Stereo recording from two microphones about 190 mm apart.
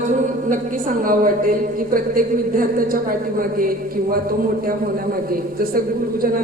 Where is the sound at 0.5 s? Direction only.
45° right (ahead or behind).